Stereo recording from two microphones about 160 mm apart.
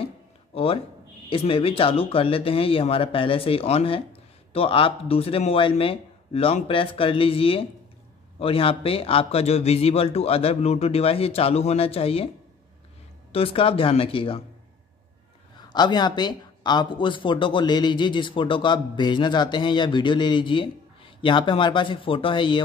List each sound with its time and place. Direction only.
0.5 s a man's voice: 35° left (ahead or behind)
13.3 s a man's voice: 35° left (ahead or behind)
15.7 s speech: 25° left (ahead or behind)